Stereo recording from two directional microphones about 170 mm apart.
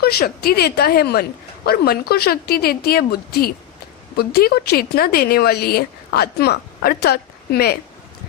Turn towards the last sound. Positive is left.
turn(degrees=65)  # may be behind; listen again after turning